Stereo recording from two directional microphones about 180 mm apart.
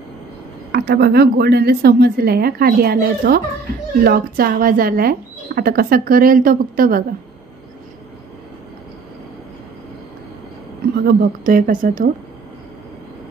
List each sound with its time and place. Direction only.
0.7 s a woman's voice: 60° right (ahead or behind)
11.1 s speech: 50° right (ahead or behind)